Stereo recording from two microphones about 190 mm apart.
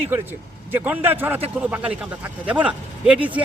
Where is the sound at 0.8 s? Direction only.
10° right (ahead or behind).